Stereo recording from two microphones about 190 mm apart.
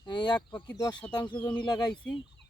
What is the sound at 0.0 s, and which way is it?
Speech, 25° left (ahead or behind).